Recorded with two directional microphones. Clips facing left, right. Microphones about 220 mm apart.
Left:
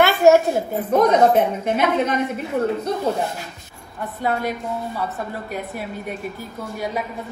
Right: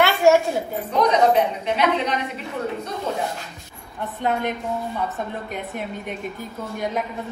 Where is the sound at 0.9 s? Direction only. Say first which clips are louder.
Left 3 dB; 50° left (ahead or behind).